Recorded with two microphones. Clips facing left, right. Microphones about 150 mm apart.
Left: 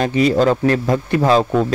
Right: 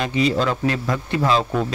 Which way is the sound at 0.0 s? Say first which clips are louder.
Left 5 dB; 45° left (ahead or behind).